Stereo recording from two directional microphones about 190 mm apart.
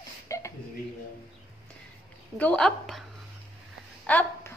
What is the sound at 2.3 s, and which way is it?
Speech, 5° left (ahead or behind).